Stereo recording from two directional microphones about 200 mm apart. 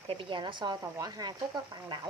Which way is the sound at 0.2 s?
25° right (ahead or behind).